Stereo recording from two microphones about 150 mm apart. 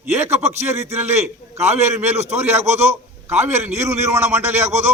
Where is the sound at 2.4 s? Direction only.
15° right (ahead or behind).